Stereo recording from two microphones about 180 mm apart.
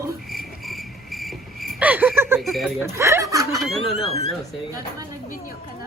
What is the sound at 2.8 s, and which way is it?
Speech, 15° right (ahead or behind).